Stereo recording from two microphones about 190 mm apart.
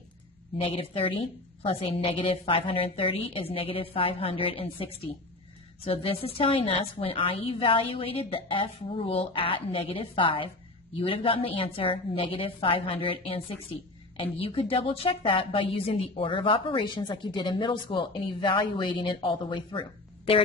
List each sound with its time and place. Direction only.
0.6 s a woman's voice: 30° left (ahead or behind)